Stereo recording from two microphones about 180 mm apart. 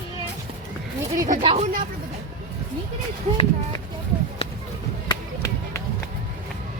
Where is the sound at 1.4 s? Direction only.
30° right (ahead or behind).